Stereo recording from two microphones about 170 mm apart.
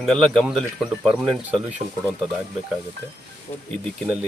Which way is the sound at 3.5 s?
20° left (ahead or behind).